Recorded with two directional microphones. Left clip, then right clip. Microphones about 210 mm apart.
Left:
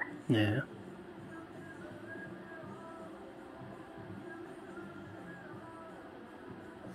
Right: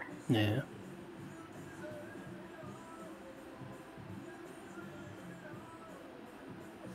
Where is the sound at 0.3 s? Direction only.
Centre (ahead or behind).